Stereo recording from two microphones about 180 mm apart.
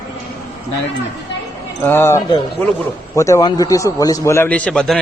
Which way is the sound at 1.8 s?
10° left (ahead or behind).